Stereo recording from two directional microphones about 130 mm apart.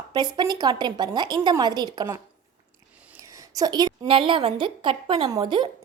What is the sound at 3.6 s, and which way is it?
A woman's voice, 30° right (ahead or behind).